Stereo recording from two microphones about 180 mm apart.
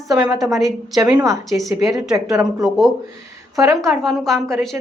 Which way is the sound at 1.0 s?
20° right (ahead or behind).